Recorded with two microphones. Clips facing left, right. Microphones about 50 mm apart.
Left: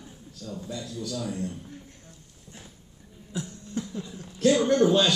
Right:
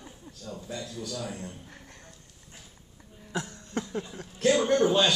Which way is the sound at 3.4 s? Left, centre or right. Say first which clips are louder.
Even; right.